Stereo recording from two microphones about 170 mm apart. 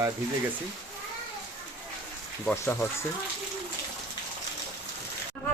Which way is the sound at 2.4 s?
10° left (ahead or behind).